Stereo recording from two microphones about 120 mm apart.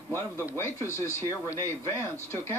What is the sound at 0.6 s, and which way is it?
Speech, 25° left (ahead or behind).